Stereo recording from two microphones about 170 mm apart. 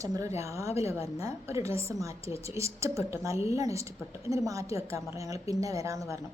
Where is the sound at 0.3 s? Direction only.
15° right (ahead or behind).